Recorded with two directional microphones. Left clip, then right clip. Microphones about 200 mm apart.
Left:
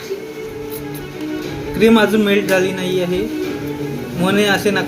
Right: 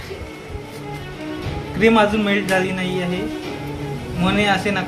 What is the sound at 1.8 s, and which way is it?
Speech, 5° left (ahead or behind).